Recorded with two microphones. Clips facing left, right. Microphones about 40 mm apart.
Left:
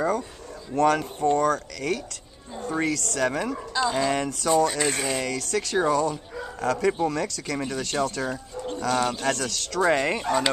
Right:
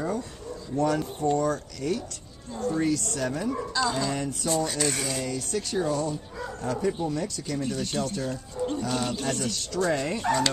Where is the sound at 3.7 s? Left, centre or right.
Left.